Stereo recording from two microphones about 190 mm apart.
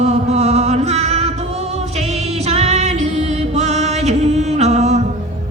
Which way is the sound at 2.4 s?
35° right (ahead or behind).